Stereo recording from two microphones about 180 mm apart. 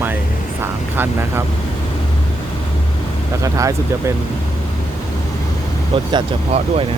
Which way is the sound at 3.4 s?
20° right (ahead or behind).